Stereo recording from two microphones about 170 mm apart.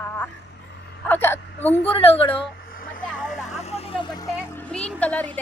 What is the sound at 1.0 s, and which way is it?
Whimper, 10° left (ahead or behind).